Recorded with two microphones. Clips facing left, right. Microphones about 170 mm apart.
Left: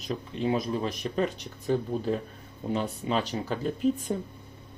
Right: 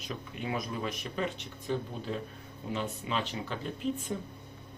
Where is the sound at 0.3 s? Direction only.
30° left (ahead or behind).